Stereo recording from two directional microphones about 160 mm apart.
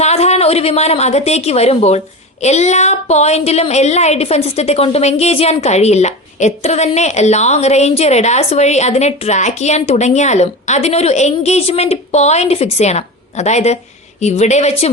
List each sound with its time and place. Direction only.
0.0 s a woman's voice: 40° left (ahead or behind)